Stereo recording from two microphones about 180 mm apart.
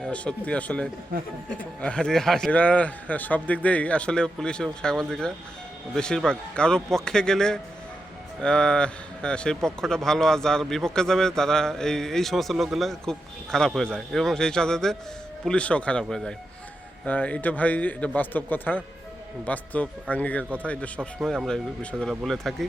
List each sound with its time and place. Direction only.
0.0 s a man's voice: 5° left (ahead or behind)